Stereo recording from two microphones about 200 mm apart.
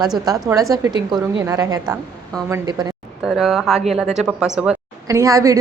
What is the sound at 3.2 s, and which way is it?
Speech, centre (ahead or behind).